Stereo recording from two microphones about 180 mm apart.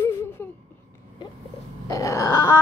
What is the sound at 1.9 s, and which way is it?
Groan, 20° left (ahead or behind).